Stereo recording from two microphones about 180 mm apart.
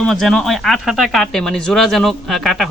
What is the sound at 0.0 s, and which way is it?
Speech, centre (ahead or behind).